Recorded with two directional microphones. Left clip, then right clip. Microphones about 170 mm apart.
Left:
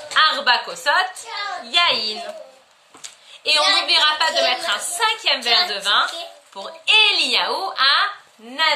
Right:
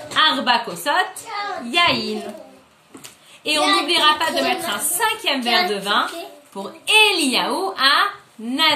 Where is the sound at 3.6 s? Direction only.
40° left (ahead or behind).